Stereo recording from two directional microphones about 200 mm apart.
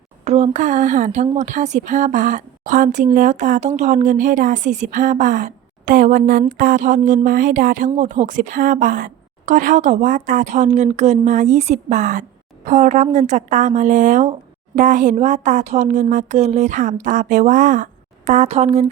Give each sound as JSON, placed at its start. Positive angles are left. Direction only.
{"t": 0.3, "sound": "a woman's voice", "side_deg": -35}